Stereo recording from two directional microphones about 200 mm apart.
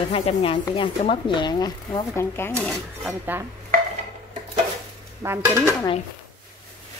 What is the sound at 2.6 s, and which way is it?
Speech, 5° right (ahead or behind).